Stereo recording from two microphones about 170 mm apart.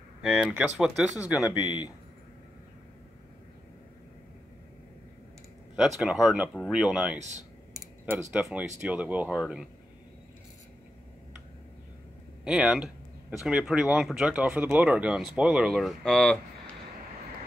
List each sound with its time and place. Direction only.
0.2 s speech: 5° right (ahead or behind)
1.4 s speech: 25° left (ahead or behind)
5.8 s speech: centre (ahead or behind)
7.7 s a sound: 5° right (ahead or behind)
8.8 s speech: 10° right (ahead or behind)
12.4 s speech: 5° right (ahead or behind)